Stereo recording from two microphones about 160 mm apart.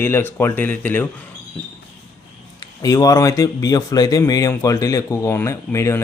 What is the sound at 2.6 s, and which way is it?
Speech, 20° left (ahead or behind).